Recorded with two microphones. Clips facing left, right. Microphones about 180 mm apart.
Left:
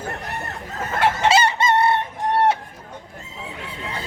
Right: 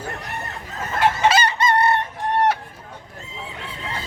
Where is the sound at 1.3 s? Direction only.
25° left (ahead or behind).